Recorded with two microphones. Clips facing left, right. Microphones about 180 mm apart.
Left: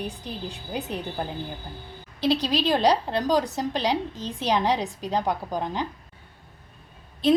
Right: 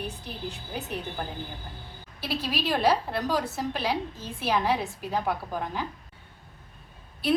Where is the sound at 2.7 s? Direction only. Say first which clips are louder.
Left 1 dB; 15° left (ahead or behind).